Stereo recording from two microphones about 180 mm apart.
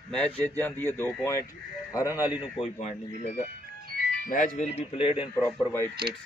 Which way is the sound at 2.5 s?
35° left (ahead or behind).